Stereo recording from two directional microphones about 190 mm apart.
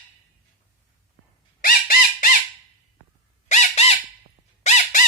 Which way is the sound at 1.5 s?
45° left (ahead or behind).